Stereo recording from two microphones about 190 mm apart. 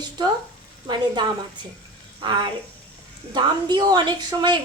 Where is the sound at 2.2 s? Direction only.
25° right (ahead or behind).